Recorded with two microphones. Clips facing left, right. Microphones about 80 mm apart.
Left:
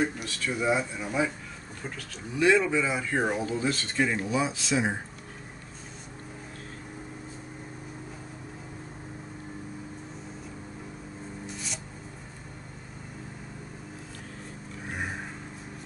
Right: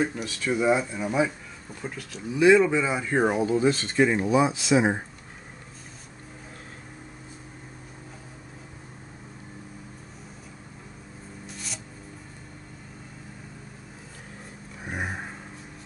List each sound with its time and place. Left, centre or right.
0.2 s speech: centre
11.4 s music: centre
14.9 s a sound: centre